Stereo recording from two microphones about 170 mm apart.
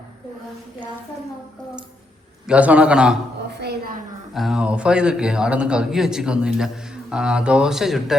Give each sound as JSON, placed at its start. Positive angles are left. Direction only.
{"t": 2.5, "sound": "a man's voice", "side_deg": -5}
{"t": 3.5, "sound": "a sound", "side_deg": -75}
{"t": 4.4, "sound": "a man's voice", "side_deg": -5}